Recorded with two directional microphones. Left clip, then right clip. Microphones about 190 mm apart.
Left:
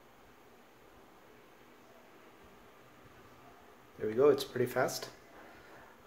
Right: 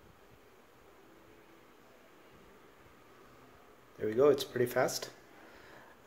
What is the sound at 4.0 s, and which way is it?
Speech, 15° right (ahead or behind).